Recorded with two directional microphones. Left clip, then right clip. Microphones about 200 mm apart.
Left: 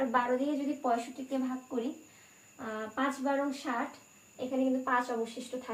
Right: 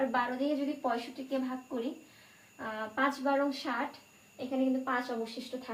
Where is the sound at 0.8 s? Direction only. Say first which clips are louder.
Left 2 dB; 20° left (ahead or behind).